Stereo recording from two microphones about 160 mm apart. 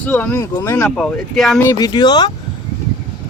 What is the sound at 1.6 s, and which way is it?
Speech, 25° left (ahead or behind).